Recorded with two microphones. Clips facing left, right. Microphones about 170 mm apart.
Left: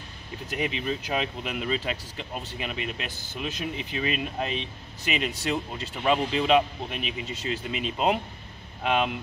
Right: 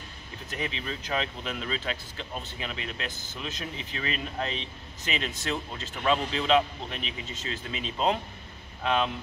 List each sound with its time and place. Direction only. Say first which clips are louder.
0.6 s speech: left 5 dB; 15° left (ahead or behind)